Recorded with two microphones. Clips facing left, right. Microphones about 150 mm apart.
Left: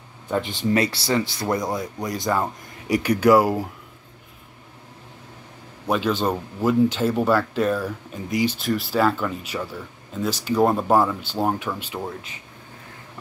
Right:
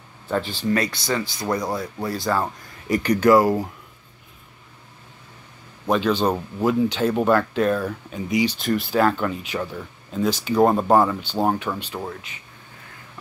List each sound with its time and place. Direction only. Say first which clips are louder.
0.3 s speech: even; 20° left (ahead or behind)
5.9 s speech: right 2 dB; 5° left (ahead or behind)
9.5 s speech: right 2 dB; 15° right (ahead or behind)
10.1 s speech: right 2 dB; centre (ahead or behind)